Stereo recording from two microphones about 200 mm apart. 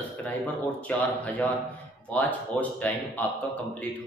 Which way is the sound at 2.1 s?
5° left (ahead or behind).